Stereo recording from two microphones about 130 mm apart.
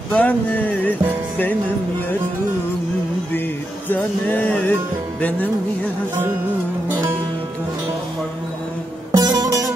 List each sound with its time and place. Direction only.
0.1 s music: 10° left (ahead or behind)
3.9 s music: 10° left (ahead or behind)
9.1 s music: 30° right (ahead or behind)